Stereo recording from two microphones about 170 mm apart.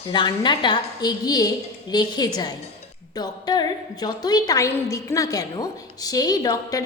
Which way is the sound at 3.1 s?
25° left (ahead or behind).